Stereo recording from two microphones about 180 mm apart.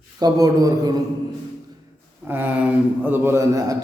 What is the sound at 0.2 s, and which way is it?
Speech, 20° right (ahead or behind).